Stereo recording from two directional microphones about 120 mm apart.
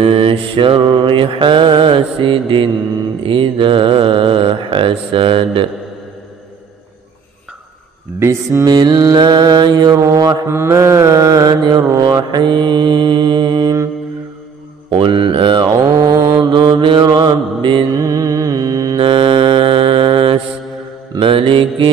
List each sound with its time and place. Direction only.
0.0 s mantra: 45° right (ahead or behind)
8.2 s mantra: 25° right (ahead or behind)
14.9 s mantra: 45° right (ahead or behind)
18.0 s mantra: 30° right (ahead or behind)
19.0 s mantra: 40° right (ahead or behind)